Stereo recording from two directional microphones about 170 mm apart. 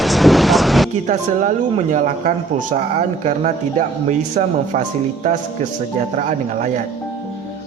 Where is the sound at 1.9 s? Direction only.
50° right (ahead or behind).